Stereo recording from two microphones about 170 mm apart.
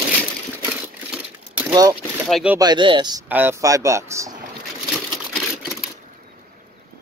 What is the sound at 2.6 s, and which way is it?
Speech, 25° right (ahead or behind).